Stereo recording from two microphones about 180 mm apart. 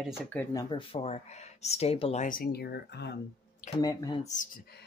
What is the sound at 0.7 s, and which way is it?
Speech, 35° left (ahead or behind).